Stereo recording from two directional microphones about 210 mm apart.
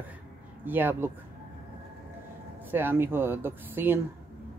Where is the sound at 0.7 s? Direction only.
10° right (ahead or behind).